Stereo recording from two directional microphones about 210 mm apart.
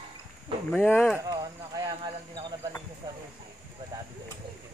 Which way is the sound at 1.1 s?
15° right (ahead or behind).